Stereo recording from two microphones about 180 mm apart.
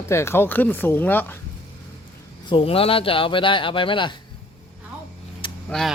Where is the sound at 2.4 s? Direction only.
30° left (ahead or behind).